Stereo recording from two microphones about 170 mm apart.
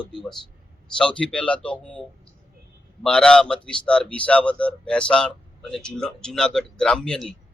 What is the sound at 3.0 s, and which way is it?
A man's voice, 5° left (ahead or behind).